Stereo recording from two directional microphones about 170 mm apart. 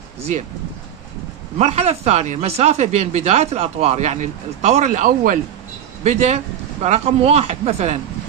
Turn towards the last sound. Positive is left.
turn(degrees=-40)  # may be behind; listen again after turning